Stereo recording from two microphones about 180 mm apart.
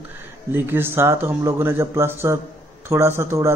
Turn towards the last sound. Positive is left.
turn(degrees=-15)  # may be behind; listen again after turning